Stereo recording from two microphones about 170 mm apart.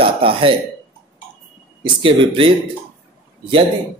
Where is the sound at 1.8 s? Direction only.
30° right (ahead or behind).